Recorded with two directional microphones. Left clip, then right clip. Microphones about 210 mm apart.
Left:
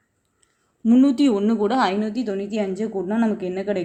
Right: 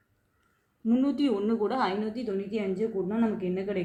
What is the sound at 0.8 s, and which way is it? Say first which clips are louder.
Speech: left 9 dB; 50° left (ahead or behind).